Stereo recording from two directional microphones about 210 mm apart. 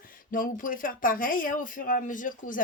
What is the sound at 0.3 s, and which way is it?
Speech, 40° left (ahead or behind).